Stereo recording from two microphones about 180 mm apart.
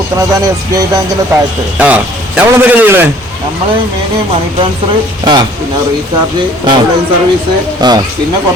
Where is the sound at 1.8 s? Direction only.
10° right (ahead or behind).